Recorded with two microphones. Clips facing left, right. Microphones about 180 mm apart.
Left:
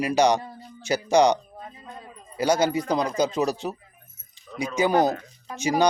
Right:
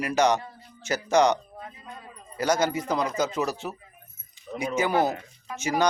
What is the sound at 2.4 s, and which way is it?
A man's voice, 10° left (ahead or behind).